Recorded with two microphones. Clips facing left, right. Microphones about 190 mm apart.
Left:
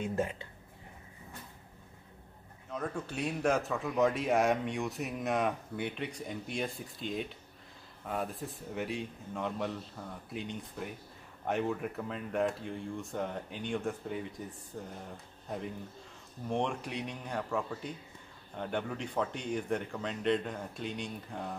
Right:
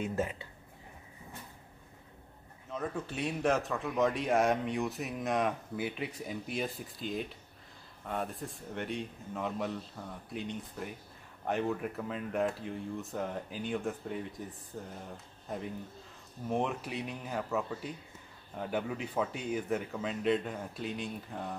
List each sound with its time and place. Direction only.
0.0 s speech: 5° right (ahead or behind)
2.7 s a man's voice: 5° right (ahead or behind)